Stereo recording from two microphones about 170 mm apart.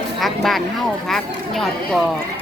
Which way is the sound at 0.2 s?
Centre (ahead or behind).